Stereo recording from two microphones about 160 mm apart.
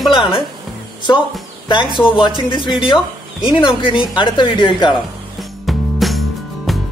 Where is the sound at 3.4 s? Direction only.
30° left (ahead or behind).